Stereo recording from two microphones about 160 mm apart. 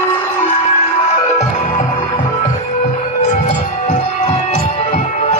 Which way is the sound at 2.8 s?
45° left (ahead or behind).